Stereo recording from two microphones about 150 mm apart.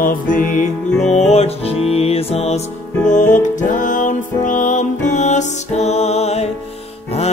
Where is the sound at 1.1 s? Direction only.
45° left (ahead or behind).